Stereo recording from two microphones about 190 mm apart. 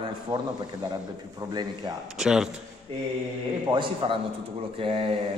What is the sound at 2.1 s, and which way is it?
Speech, 5° right (ahead or behind).